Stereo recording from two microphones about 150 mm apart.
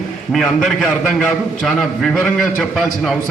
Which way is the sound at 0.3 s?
Centre (ahead or behind).